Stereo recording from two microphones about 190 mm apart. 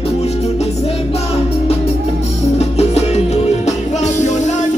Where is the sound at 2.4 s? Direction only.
35° left (ahead or behind).